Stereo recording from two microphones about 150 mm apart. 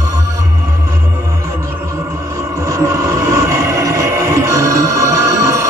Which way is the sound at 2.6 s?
20° right (ahead or behind).